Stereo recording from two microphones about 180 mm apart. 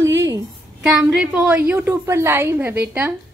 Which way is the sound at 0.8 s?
5° right (ahead or behind).